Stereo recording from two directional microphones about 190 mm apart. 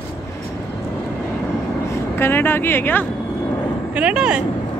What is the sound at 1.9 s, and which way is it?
Speech, 10° left (ahead or behind).